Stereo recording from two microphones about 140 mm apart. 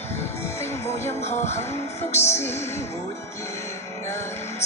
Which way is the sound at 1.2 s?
55° left (ahead or behind).